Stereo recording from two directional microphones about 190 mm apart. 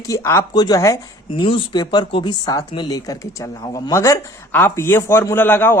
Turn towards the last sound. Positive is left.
turn(degrees=10)  # may be behind; listen again after turning